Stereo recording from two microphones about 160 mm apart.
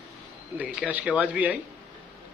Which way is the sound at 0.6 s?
10° right (ahead or behind).